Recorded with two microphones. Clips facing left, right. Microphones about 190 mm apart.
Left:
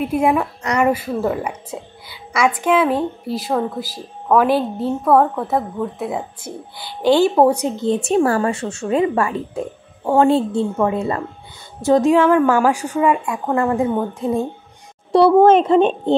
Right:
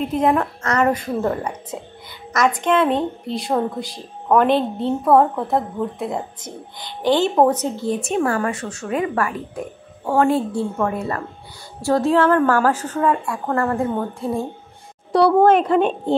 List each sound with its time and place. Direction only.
0.0 s a woman's voice: 10° left (ahead or behind)